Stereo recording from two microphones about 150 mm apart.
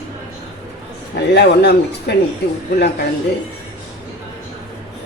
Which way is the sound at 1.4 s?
90° left.